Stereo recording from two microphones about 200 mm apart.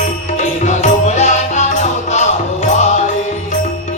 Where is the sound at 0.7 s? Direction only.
35° left (ahead or behind).